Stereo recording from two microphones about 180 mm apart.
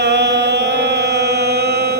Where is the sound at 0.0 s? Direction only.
75° right (ahead or behind).